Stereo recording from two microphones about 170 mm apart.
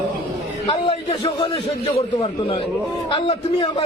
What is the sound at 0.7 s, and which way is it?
A man's voice, 30° left (ahead or behind).